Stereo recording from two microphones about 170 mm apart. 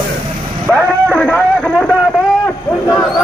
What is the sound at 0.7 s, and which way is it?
Vehicle, 5° left (ahead or behind).